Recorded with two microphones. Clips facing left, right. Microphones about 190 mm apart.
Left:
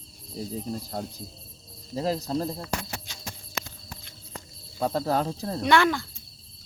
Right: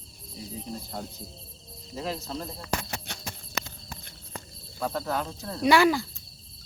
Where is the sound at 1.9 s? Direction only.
35° left (ahead or behind).